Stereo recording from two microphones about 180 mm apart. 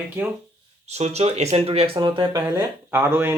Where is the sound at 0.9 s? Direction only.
35° right (ahead or behind).